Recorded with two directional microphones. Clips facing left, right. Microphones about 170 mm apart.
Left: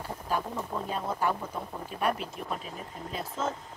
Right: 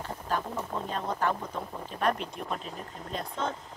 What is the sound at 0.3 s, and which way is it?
Speech, 10° left (ahead or behind).